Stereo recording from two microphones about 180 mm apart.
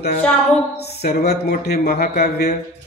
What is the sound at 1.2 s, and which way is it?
A man's voice, 60° left (ahead or behind).